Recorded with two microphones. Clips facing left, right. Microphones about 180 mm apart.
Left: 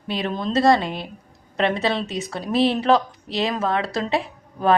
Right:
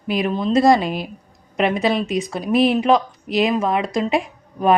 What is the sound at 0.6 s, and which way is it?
Speech, 20° right (ahead or behind).